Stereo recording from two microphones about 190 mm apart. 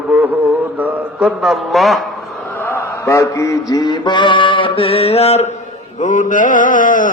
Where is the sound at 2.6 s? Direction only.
10° left (ahead or behind).